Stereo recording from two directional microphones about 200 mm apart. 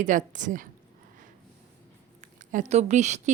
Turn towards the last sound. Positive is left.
turn(degrees=-35)  # may be behind; listen again after turning